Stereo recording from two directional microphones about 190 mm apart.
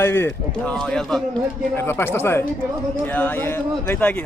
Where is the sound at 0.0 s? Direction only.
10° left (ahead or behind).